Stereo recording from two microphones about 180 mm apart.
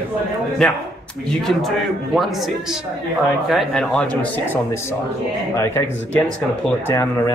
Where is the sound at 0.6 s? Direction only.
Centre (ahead or behind).